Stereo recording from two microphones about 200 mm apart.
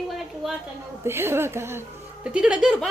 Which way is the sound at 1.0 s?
10° right (ahead or behind).